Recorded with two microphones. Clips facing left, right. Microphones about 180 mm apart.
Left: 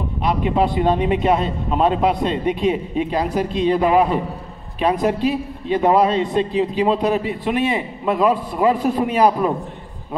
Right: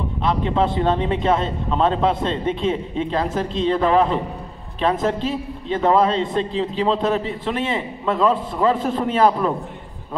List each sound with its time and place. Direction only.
0.2 s a man's voice: 15° left (ahead or behind)